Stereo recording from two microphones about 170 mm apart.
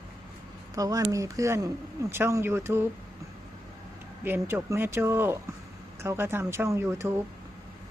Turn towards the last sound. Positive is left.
turn(degrees=-15)  # may be behind; listen again after turning